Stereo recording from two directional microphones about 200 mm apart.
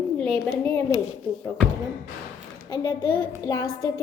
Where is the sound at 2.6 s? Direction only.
20° left (ahead or behind).